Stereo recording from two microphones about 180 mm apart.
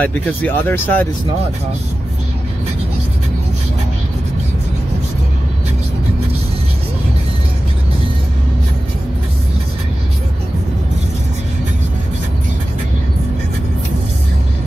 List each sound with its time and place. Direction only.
0.0 s speech: 10° left (ahead or behind)